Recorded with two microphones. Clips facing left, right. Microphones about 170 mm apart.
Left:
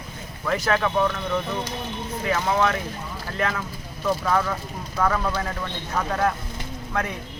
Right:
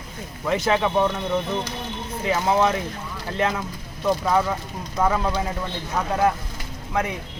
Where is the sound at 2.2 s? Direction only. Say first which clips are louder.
Right 2 dB; 20° right (ahead or behind).